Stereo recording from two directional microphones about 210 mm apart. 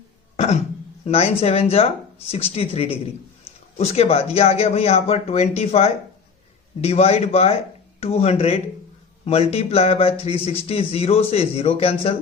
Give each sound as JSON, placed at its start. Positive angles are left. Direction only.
{"t": 0.3, "sound": "cough", "side_deg": 35}
{"t": 1.0, "sound": "a man's voice", "side_deg": 30}